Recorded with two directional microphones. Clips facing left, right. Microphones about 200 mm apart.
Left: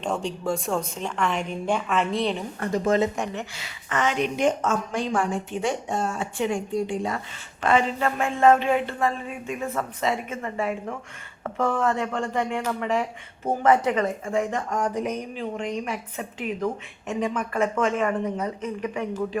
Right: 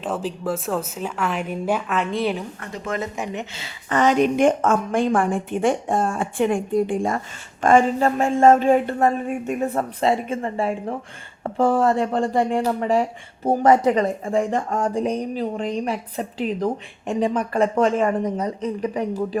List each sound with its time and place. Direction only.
0.0 s speech: 5° right (ahead or behind)
2.6 s speech: 35° left (ahead or behind)
3.3 s a woman's voice: 25° right (ahead or behind)